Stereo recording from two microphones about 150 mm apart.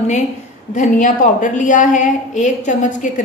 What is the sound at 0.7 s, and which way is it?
A woman's voice, 60° left (ahead or behind).